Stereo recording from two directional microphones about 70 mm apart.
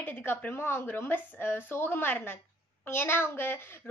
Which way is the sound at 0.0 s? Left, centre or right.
Left.